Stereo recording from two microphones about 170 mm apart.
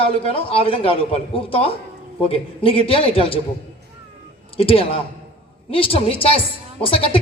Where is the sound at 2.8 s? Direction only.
35° left (ahead or behind).